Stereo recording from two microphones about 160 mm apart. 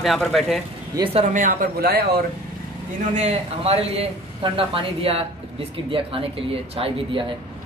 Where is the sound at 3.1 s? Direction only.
45° right (ahead or behind).